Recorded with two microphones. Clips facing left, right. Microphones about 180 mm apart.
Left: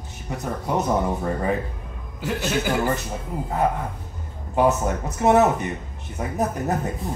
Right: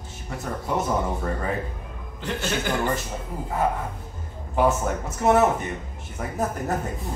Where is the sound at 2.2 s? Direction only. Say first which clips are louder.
Left 3 dB; 5° left (ahead or behind).